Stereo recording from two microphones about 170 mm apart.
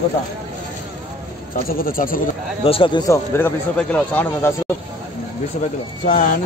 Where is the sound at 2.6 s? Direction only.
30° left (ahead or behind).